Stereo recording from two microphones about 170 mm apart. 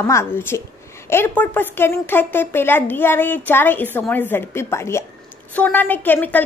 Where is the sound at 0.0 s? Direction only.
15° left (ahead or behind).